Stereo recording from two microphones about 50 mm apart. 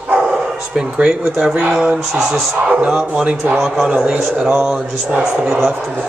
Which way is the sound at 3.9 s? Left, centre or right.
Right.